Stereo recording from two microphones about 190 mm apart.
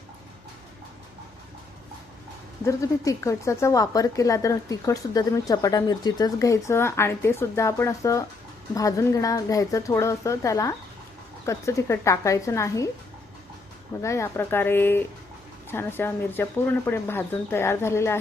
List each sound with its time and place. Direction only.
2.6 s a woman's voice: 15° left (ahead or behind)
14.0 s a woman's voice: 15° left (ahead or behind)